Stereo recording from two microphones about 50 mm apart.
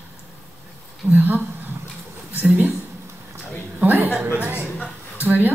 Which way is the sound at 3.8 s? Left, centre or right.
Right.